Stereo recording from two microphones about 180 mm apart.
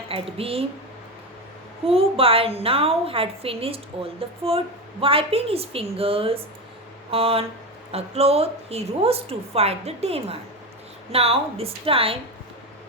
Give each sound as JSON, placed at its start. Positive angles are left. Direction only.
{"t": 0.1, "sound": "a woman's voice", "side_deg": -30}
{"t": 1.9, "sound": "a woman's voice", "side_deg": -30}